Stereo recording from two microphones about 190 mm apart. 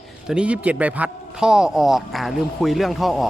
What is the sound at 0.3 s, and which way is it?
Speech, 5° right (ahead or behind).